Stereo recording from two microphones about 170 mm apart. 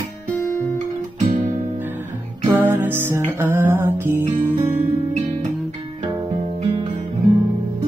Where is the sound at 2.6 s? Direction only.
10° right (ahead or behind).